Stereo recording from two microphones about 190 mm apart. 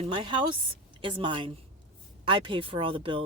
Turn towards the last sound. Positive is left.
turn(degrees=-25)  # may be behind; listen again after turning